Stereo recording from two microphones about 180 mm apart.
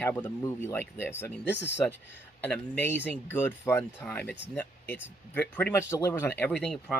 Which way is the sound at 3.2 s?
10° left (ahead or behind).